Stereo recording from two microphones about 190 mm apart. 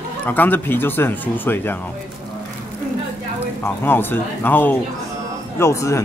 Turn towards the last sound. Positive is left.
turn(degrees=15)  # may be behind; listen again after turning